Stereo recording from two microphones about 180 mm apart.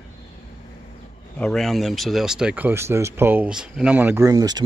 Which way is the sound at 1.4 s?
Centre (ahead or behind).